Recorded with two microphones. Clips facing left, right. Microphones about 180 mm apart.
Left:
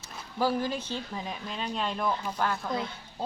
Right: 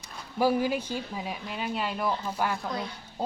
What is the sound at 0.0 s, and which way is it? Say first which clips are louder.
Speech: right 3 dB; 15° right (ahead or behind).